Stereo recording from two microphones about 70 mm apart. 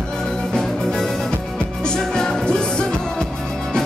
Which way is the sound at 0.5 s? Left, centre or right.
Centre.